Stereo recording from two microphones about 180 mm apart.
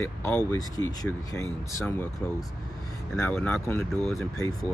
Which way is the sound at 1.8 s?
10° left (ahead or behind).